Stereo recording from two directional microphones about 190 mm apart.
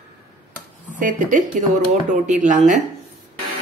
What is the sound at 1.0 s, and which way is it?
Speech, 45° right (ahead or behind).